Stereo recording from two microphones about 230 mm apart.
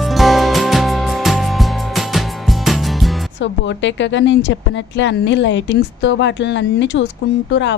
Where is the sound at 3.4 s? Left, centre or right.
Left.